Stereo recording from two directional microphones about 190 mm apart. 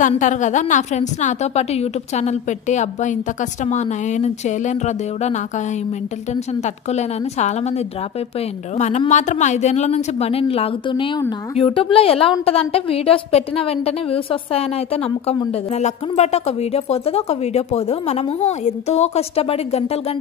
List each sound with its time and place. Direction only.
0.0 s speech: 40° left (ahead or behind)
6.6 s speech: 35° left (ahead or behind)